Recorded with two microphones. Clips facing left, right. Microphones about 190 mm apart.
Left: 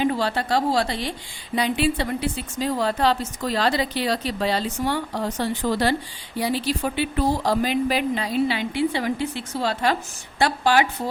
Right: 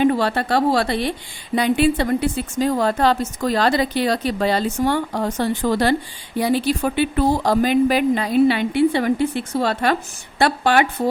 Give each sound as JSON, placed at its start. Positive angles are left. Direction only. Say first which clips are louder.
{"t": 0.0, "sound": "a woman's voice", "louder": "right 5 dB", "side_deg": -55}